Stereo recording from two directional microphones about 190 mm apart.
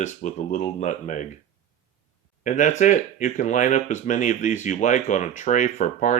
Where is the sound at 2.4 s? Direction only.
40° left (ahead or behind).